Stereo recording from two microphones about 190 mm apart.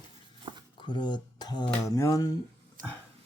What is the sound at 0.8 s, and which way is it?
Speech, 25° left (ahead or behind).